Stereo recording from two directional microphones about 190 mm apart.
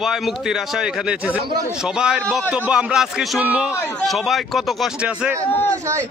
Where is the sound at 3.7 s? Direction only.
10° left (ahead or behind).